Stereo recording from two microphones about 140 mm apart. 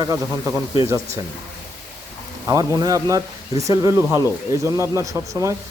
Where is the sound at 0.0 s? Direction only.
20° right (ahead or behind).